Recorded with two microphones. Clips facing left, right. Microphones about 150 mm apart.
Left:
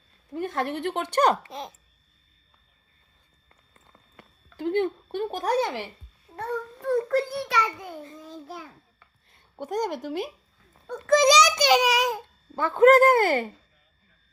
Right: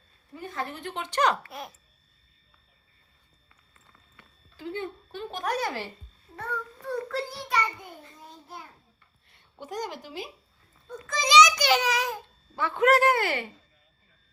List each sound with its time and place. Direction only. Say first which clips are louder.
0.3 s a woman's voice: left 7 dB; 65° left (ahead or behind)
1.4 s a child's voice: left 3 dB; 20° left (ahead or behind)
4.4 s a sound: left 10 dB; 65° left (ahead or behind)
5.3 s speech: left 3 dB; 40° left (ahead or behind)
5.5 s a child's voice: left 5 dB; 20° left (ahead or behind)
6.9 s child singing: left 8 dB; 50° left (ahead or behind)
7.4 s a child's voice: left 2 dB; 90° left
9.6 s speech: left 7 dB; 50° left (ahead or behind)
10.8 s speech: left 11 dB; 65° left (ahead or behind); by 11.5 s 40° left (ahead or behind)
11.5 s a child's voice: left 4 dB; 15° left (ahead or behind)
12.5 s speech: left 6 dB; 45° left (ahead or behind)